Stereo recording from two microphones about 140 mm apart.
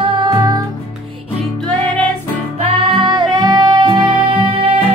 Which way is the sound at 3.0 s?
35° right (ahead or behind).